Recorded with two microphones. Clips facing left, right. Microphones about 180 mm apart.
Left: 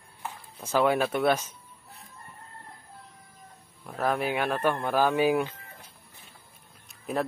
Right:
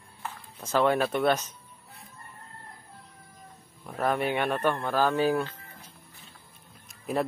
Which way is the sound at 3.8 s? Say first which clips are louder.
Even; centre (ahead or behind).